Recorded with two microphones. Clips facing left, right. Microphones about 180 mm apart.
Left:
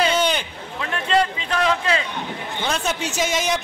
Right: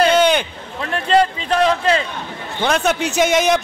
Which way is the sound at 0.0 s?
60° right (ahead or behind).